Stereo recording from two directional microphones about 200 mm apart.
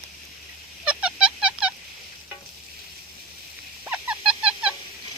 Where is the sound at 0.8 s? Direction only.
5° right (ahead or behind).